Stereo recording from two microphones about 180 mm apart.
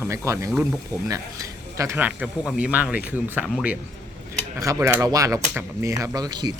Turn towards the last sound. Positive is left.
turn(degrees=-25)  # may be behind; listen again after turning